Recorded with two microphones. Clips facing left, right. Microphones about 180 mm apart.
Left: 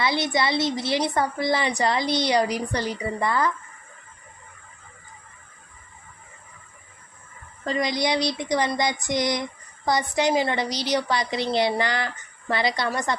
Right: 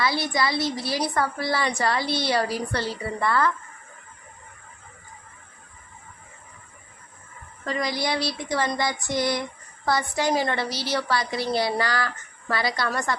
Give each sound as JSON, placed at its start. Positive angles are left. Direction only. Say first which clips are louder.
{"t": 0.0, "sound": "a woman's voice", "louder": "left 1 dB", "side_deg": 20}
{"t": 7.6, "sound": "a woman's voice", "louder": "left 3 dB", "side_deg": 25}